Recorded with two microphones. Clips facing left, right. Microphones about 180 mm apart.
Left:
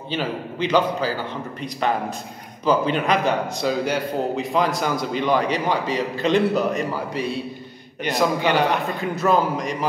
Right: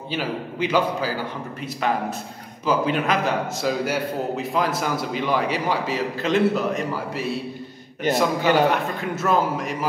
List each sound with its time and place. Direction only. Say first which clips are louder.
0.1 s a man's voice: left 1 dB; 5° right (ahead or behind)